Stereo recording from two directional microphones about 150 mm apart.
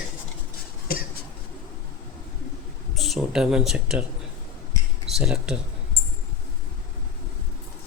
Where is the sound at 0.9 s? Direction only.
90° left.